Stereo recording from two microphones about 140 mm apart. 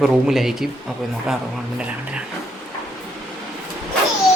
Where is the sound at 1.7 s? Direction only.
10° right (ahead or behind).